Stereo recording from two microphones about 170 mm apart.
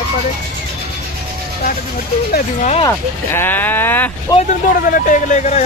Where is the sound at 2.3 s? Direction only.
45° left (ahead or behind).